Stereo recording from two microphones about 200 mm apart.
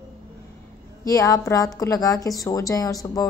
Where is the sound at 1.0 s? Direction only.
15° left (ahead or behind).